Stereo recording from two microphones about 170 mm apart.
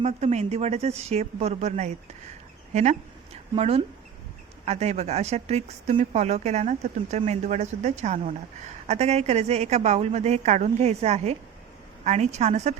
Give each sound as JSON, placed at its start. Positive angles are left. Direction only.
{"t": 0.0, "sound": "speech", "side_deg": -40}
{"t": 3.5, "sound": "speech", "side_deg": -35}